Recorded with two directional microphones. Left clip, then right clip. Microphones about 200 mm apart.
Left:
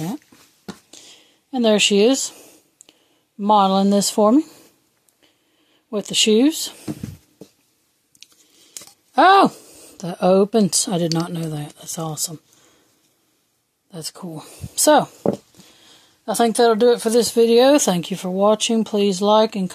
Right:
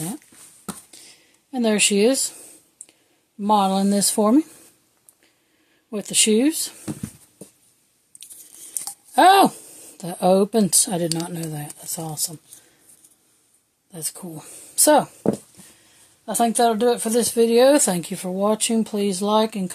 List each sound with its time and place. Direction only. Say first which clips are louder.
0.9 s a sound: left 3 dB; 35° left (ahead or behind)
5.9 s speech: left 3 dB; 30° left (ahead or behind)
9.1 s speech: left 1 dB; 25° left (ahead or behind)
13.9 s speech: left 2 dB; 30° left (ahead or behind)
16.3 s speech: left 3 dB; 50° left (ahead or behind)